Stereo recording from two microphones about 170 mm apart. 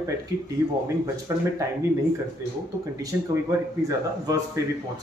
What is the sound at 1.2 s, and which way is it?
Speech, 15° right (ahead or behind).